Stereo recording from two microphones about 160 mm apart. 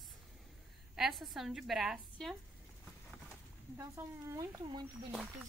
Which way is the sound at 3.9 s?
20° right (ahead or behind).